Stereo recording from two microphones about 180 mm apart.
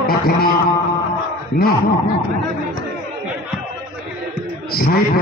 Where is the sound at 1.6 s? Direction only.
55° left (ahead or behind).